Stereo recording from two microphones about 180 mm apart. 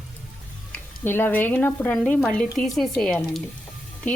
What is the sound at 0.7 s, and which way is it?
Speech, 10° left (ahead or behind).